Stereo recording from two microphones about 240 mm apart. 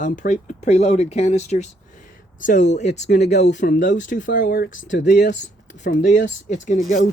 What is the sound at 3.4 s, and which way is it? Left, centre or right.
Speech, left.